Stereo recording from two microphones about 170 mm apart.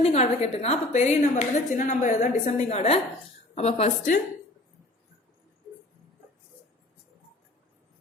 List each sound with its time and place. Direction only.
0.0 s a woman's voice: 40° left (ahead or behind)